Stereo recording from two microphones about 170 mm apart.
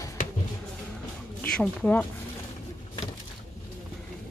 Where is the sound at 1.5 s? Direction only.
5° left (ahead or behind).